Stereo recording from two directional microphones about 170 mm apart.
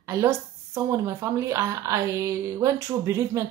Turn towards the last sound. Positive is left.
turn(degrees=-15)  # may be behind; listen again after turning